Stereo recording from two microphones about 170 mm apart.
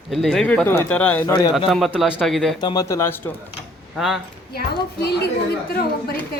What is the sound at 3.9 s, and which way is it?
Speech, centre (ahead or behind).